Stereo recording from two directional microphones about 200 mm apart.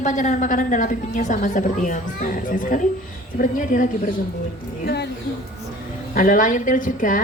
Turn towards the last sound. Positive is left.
turn(degrees=40)  # may be behind; listen again after turning